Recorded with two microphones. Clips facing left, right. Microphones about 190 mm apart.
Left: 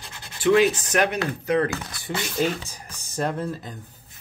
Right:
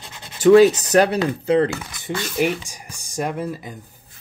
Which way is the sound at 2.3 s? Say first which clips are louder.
Right 4 dB; 15° right (ahead or behind).